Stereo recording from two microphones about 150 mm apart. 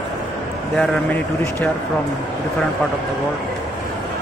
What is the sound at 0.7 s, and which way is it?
Speech, 10° left (ahead or behind).